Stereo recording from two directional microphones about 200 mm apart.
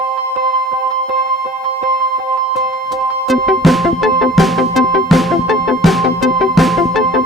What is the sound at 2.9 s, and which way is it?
Music, centre (ahead or behind).